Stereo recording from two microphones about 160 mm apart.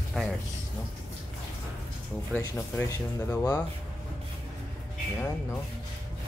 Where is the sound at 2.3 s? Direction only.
15° left (ahead or behind).